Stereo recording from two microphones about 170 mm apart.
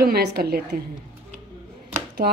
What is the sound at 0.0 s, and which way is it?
Speech, 65° right (ahead or behind).